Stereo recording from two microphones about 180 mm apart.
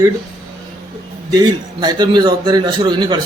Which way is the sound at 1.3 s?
25° right (ahead or behind).